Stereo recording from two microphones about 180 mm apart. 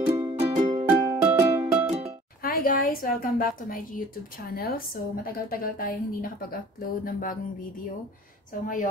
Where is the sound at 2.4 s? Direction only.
50° left (ahead or behind).